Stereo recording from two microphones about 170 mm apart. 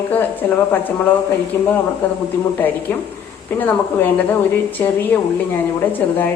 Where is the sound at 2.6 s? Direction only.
10° left (ahead or behind).